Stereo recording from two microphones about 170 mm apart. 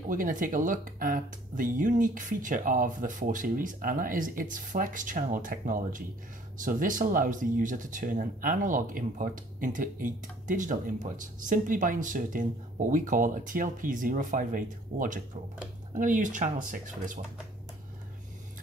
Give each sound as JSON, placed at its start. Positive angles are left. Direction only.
{"t": 0.1, "sound": "speech", "side_deg": -50}